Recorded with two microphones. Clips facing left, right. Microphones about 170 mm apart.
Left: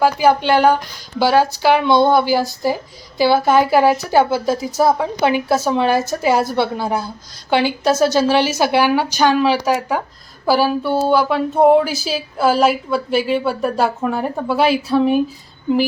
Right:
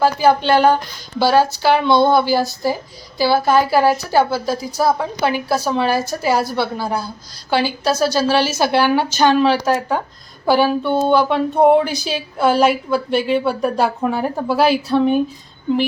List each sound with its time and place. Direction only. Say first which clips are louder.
0.0 s a woman's voice: even; 15° left (ahead or behind)